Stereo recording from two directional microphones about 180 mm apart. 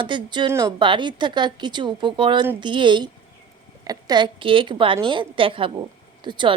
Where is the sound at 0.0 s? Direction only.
25° right (ahead or behind).